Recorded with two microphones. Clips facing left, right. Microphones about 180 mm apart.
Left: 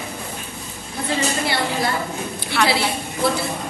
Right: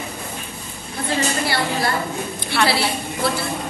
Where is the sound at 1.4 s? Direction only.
20° left (ahead or behind).